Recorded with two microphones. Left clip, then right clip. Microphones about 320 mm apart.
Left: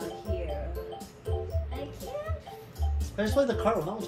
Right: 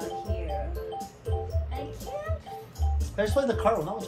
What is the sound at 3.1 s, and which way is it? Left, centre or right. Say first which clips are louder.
Speech: right 1 dB; right.